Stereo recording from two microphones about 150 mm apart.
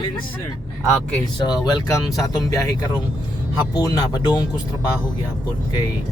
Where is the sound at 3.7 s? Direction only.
25° left (ahead or behind).